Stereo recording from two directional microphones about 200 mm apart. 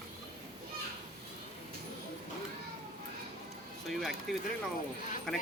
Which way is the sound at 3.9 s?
Centre (ahead or behind).